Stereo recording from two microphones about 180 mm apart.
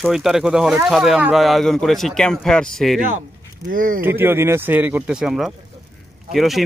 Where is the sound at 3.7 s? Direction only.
50° right (ahead or behind).